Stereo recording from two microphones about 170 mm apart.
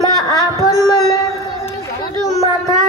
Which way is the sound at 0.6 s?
20° left (ahead or behind).